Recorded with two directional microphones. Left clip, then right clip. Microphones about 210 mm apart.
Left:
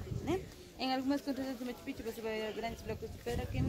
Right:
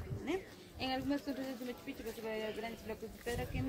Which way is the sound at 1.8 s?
30° left (ahead or behind).